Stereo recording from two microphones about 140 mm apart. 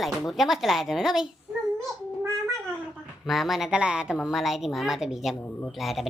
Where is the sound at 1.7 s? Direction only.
5° left (ahead or behind).